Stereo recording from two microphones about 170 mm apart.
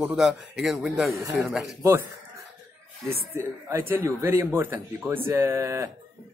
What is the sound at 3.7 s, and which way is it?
Speech, 15° right (ahead or behind).